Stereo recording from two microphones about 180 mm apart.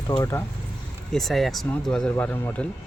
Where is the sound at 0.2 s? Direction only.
15° left (ahead or behind).